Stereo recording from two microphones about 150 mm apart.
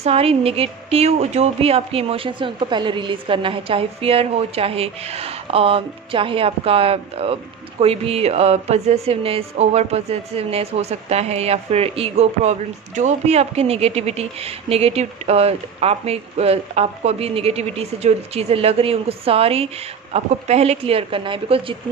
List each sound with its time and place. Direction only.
0.0 s a woman's voice: 40° right (ahead or behind)